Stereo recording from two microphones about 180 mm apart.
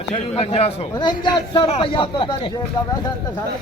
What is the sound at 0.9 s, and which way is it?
A man's voice, 25° left (ahead or behind).